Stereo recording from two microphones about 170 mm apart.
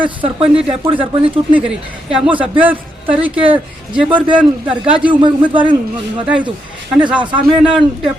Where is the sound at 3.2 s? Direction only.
30° right (ahead or behind).